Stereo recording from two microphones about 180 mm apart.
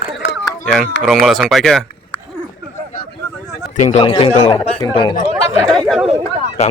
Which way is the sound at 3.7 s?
40° left (ahead or behind).